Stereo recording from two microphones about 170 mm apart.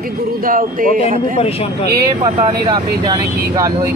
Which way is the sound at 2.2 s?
25° right (ahead or behind).